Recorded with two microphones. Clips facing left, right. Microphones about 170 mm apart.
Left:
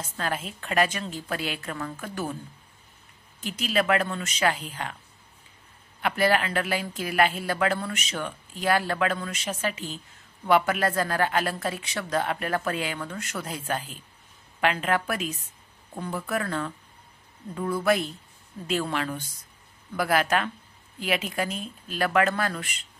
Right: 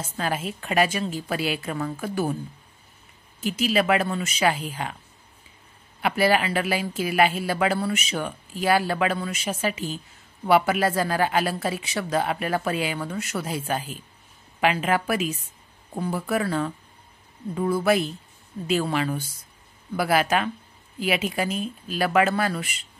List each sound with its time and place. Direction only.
0.2 s speech: 5° right (ahead or behind)
3.3 s speech: 5° right (ahead or behind)
5.9 s speech: 5° right (ahead or behind)